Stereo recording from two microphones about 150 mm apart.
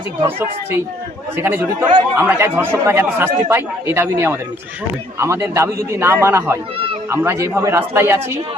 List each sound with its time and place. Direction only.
1.4 s speech: 15° right (ahead or behind)